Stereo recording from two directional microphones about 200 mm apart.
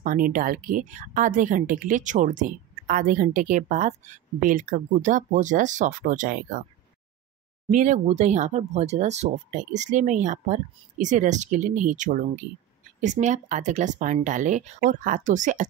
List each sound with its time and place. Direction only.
0.0 s speech: 45° right (ahead or behind)
7.7 s speech: 40° right (ahead or behind)